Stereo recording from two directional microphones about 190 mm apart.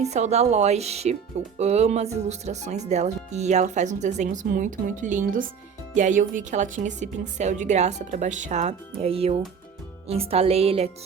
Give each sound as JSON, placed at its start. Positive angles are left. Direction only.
{"t": 0.0, "sound": "speech", "side_deg": -35}